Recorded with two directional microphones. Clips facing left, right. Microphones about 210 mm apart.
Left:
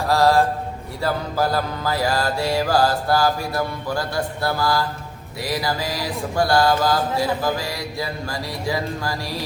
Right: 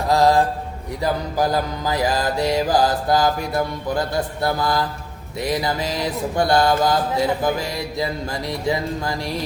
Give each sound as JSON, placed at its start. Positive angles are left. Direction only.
{"t": 0.0, "sound": "mantra", "side_deg": -20}